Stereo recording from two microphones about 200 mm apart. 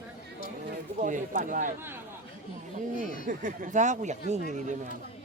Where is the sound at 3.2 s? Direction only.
40° right (ahead or behind).